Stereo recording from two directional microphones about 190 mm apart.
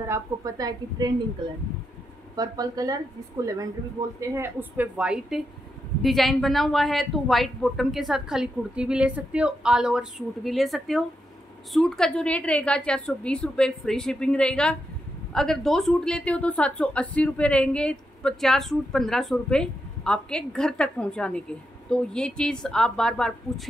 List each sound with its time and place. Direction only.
0.1 s a woman's voice: 20° right (ahead or behind)
2.3 s a woman's voice: 20° right (ahead or behind)
4.2 s a woman's voice: 10° right (ahead or behind)